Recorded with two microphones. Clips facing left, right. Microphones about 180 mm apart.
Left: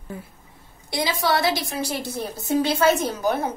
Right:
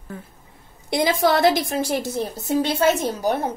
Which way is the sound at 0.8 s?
50° right (ahead or behind).